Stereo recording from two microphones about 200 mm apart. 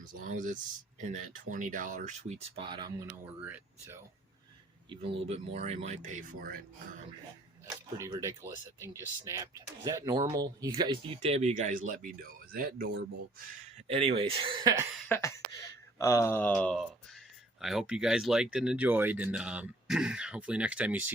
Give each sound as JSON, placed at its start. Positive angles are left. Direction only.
{"t": 0.0, "sound": "speech", "side_deg": -40}
{"t": 2.6, "sound": "speech", "side_deg": -20}
{"t": 3.4, "sound": "speech", "side_deg": -10}
{"t": 4.9, "sound": "speech", "side_deg": -25}
{"t": 7.7, "sound": "speech", "side_deg": -15}
{"t": 13.7, "sound": "speech", "side_deg": -30}
{"t": 15.1, "sound": "speech", "side_deg": 15}